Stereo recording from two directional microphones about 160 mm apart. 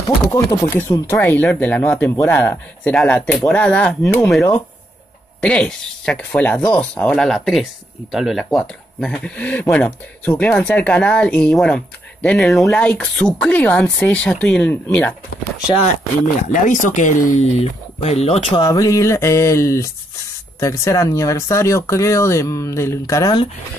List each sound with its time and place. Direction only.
0.3 s speech: 20° left (ahead or behind)
4.3 s speech: centre (ahead or behind)
16.5 s speech: 55° left (ahead or behind)
18.0 s speech: 40° left (ahead or behind)
18.6 s speech: 20° left (ahead or behind)